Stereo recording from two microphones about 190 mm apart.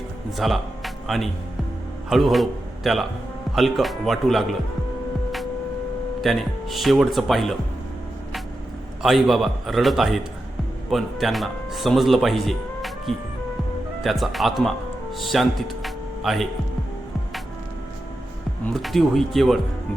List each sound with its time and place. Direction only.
0.3 s a man's voice: centre (ahead or behind)
6.2 s speech: centre (ahead or behind)
9.0 s speech: centre (ahead or behind)
18.6 s speech: centre (ahead or behind)